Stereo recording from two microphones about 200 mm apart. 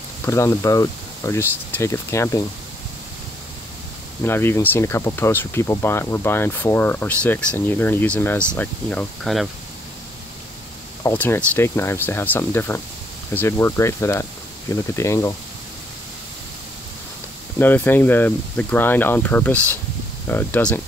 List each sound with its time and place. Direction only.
0.2 s speech: 15° left (ahead or behind)
4.2 s speech: 10° left (ahead or behind)
11.1 s speech: 10° left (ahead or behind)
17.6 s speech: 10° left (ahead or behind)